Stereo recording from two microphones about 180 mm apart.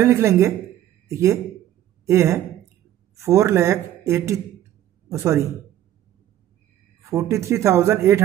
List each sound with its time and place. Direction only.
0.0 s a man's voice: 15° right (ahead or behind)
7.0 s speech: 15° right (ahead or behind)